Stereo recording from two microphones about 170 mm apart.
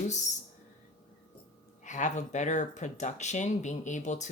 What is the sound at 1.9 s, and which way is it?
Speech, 45° left (ahead or behind).